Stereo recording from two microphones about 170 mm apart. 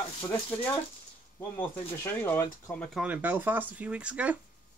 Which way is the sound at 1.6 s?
10° left (ahead or behind).